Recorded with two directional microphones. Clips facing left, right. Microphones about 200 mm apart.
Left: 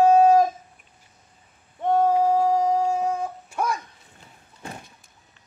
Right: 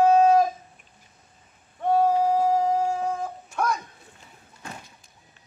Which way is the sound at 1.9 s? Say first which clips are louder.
Left 1 dB; 10° right (ahead or behind).